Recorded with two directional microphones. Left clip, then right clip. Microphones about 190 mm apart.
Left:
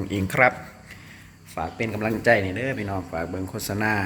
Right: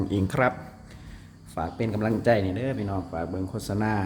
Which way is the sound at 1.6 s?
10° right (ahead or behind).